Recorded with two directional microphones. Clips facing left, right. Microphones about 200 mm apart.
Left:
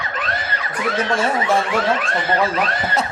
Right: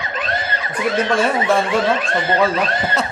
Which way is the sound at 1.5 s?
25° right (ahead or behind).